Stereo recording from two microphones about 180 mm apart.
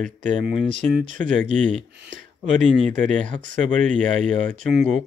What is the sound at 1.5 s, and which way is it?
Speech, 5° left (ahead or behind).